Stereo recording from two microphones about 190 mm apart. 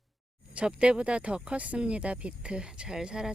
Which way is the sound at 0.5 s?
5° right (ahead or behind).